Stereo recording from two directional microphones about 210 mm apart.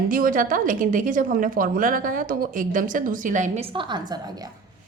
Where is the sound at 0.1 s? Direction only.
40° right (ahead or behind).